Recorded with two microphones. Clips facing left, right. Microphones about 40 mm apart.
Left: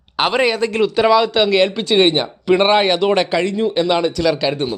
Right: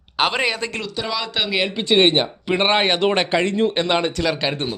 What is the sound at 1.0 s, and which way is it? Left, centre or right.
Speech, centre.